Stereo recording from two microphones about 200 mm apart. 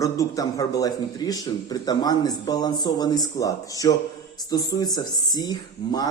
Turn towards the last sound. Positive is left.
turn(degrees=20)  # may be behind; listen again after turning